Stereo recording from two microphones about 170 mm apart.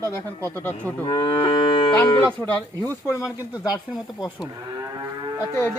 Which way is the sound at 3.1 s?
20° left (ahead or behind).